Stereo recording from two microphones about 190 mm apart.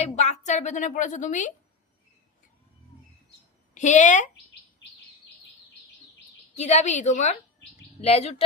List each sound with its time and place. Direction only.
0.0 s a woman's voice: 35° left (ahead or behind)
3.8 s a woman's voice: 40° left (ahead or behind)
6.6 s a woman's voice: 35° left (ahead or behind)